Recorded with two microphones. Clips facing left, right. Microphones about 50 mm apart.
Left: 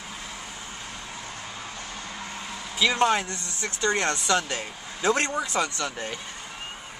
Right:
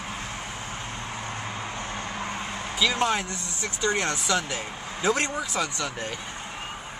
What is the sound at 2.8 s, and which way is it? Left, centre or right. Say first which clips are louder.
Speech: left 2 dB; centre.